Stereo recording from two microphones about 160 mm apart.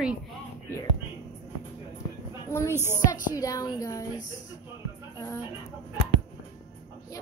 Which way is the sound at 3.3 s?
20° left (ahead or behind).